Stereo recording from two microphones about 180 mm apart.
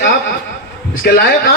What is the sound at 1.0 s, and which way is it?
Speech, 60° left (ahead or behind).